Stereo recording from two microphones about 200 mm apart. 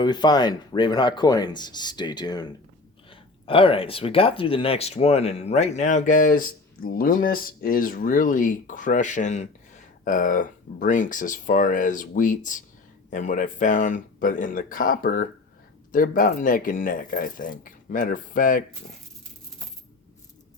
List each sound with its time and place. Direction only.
0.0 s speech: 20° left (ahead or behind); by 18.6 s 45° left (ahead or behind)